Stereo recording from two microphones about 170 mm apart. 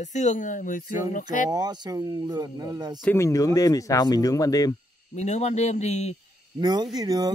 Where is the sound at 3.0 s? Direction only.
15° left (ahead or behind).